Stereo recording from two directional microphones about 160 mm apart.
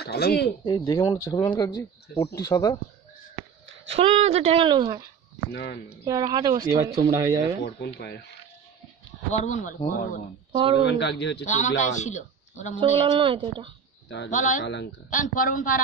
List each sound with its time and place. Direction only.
0.0 s speech: 85° left
0.7 s speech: 25° left (ahead or behind)
3.9 s speech: 40° right (ahead or behind)
5.5 s speech: 90° left
6.0 s speech: 25° right (ahead or behind)
7.6 s speech: 90° left
9.3 s a man's voice: 50° left (ahead or behind)
9.8 s speech: 60° left (ahead or behind)
10.5 s speech: 30° right (ahead or behind)
10.9 s speech: 90° left
11.4 s a man's voice: 50° left (ahead or behind)
13.1 s speech: 35° right (ahead or behind)
14.3 s a man's voice: 55° left (ahead or behind)